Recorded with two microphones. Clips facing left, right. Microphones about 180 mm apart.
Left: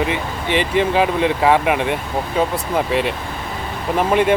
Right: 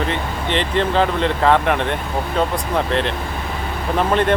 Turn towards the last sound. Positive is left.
turn(degrees=10)  # may be behind; listen again after turning